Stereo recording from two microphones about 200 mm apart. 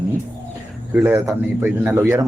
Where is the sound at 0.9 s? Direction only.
5° right (ahead or behind).